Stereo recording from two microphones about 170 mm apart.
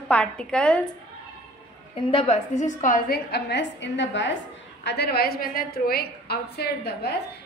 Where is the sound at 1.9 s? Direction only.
35° left (ahead or behind); by 4.3 s 90° left.